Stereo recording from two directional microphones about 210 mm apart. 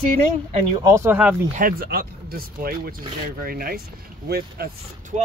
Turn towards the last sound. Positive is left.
turn(degrees=-45)  # may be behind; listen again after turning